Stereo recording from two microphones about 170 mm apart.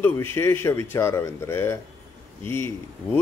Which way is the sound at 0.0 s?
15° left (ahead or behind).